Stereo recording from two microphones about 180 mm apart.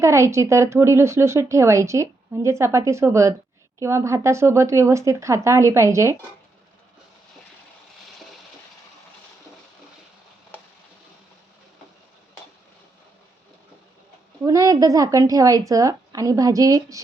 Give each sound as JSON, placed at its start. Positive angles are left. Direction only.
{"t": 0.0, "sound": "a woman's voice", "side_deg": -15}
{"t": 14.4, "sound": "a woman's voice", "side_deg": -20}